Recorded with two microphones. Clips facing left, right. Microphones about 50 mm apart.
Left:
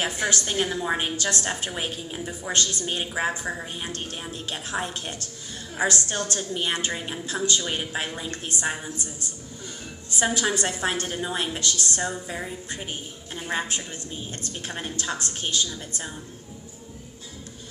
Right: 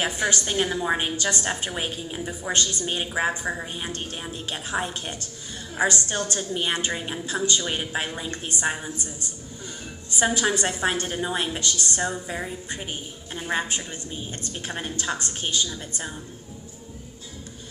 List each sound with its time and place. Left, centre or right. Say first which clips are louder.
0.0 s a woman's voice: right 1 dB; centre
10.3 s a woman's voice: right 1 dB; right